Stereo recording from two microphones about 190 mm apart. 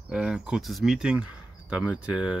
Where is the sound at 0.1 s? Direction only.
5° right (ahead or behind).